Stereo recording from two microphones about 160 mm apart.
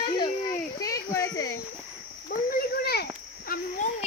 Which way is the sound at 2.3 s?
65° left (ahead or behind).